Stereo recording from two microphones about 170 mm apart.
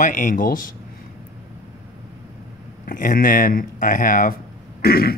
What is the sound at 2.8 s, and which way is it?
Speech, 55° left (ahead or behind).